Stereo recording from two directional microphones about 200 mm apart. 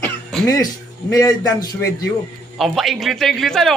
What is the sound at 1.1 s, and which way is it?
Speech, 15° left (ahead or behind).